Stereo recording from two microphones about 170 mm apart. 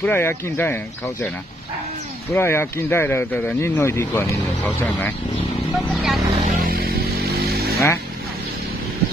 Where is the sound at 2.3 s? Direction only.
15° left (ahead or behind); by 6.2 s centre (ahead or behind).